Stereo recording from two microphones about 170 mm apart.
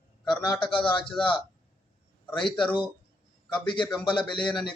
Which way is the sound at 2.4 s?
30° left (ahead or behind).